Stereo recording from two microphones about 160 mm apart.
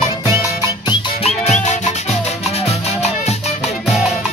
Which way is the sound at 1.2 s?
45° left (ahead or behind).